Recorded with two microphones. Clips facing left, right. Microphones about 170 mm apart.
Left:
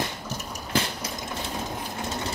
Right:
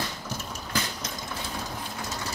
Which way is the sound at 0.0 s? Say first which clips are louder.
Left 2 dB; 15° left (ahead or behind).